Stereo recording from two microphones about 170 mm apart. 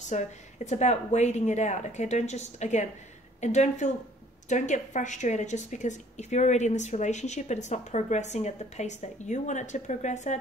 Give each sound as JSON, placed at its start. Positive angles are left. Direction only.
{"t": 0.1, "sound": "a woman's voice", "side_deg": 45}